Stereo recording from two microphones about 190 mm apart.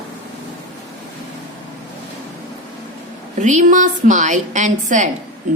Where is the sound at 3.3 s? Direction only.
40° right (ahead or behind).